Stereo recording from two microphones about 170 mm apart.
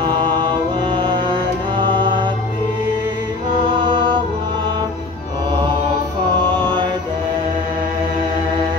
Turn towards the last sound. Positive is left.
turn(degrees=-30)  # may be behind; listen again after turning